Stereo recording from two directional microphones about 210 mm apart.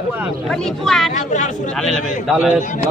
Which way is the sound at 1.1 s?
35° left (ahead or behind).